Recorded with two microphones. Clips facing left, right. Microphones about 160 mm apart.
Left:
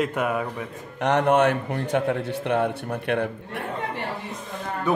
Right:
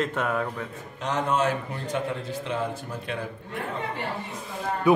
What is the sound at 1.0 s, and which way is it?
A man's voice, 65° left (ahead or behind).